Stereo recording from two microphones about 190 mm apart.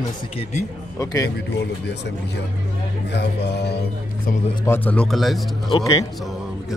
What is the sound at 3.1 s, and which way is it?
A man's voice, 60° left (ahead or behind).